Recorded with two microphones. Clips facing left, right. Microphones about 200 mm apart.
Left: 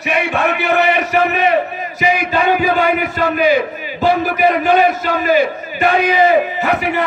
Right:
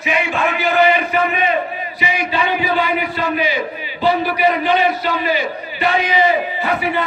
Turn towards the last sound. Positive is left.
turn(degrees=45)  # may be behind; listen again after turning